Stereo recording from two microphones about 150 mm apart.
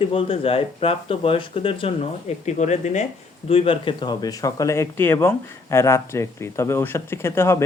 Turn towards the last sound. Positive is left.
turn(degrees=15)  # may be behind; listen again after turning